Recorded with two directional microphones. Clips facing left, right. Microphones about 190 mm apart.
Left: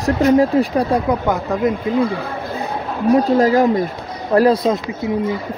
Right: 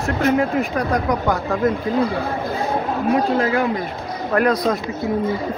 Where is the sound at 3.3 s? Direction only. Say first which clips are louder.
Left 6 dB; 40° left (ahead or behind).